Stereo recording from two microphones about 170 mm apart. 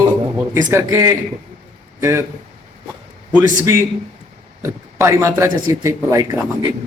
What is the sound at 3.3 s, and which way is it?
Speech, 15° right (ahead or behind).